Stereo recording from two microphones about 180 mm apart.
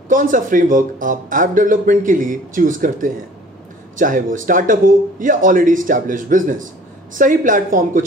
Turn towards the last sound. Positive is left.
turn(degrees=-45)  # may be behind; listen again after turning